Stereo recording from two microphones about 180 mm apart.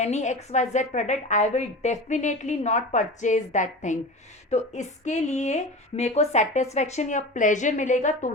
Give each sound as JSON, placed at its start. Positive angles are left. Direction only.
{"t": 0.0, "sound": "a woman's voice", "side_deg": 40}